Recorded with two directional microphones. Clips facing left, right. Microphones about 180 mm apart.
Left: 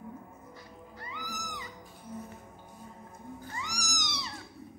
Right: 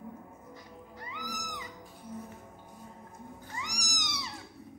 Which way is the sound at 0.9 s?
15° right (ahead or behind).